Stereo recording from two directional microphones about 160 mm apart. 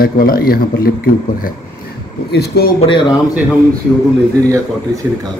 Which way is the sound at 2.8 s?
30° left (ahead or behind).